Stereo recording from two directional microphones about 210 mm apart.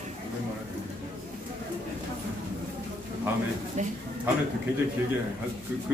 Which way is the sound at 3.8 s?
35° right (ahead or behind).